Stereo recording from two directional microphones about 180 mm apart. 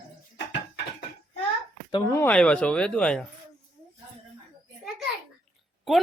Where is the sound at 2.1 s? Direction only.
10° left (ahead or behind).